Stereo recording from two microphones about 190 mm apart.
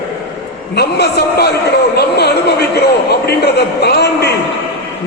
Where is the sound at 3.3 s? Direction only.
60° left (ahead or behind).